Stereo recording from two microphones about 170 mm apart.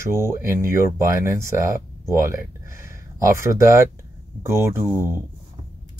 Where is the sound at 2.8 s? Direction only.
15° right (ahead or behind).